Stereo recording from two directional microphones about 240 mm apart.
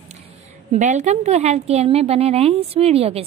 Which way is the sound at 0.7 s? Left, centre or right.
Right.